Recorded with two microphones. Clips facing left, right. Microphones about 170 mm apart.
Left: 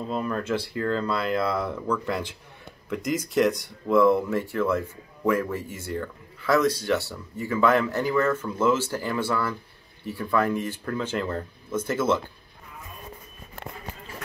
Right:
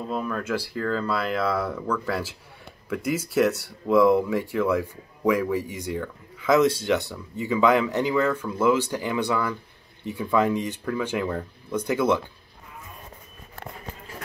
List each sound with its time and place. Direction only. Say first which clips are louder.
0.1 s speech: left 1 dB; centre (ahead or behind)